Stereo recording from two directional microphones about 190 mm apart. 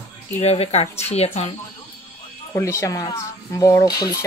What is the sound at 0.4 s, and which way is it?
Speech, 35° left (ahead or behind).